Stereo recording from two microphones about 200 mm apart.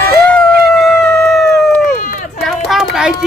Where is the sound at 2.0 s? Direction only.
40° left (ahead or behind).